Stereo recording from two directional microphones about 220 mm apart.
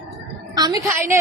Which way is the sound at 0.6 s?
15° right (ahead or behind).